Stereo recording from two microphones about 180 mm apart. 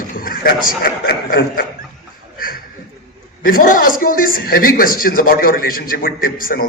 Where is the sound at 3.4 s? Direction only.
50° left (ahead or behind).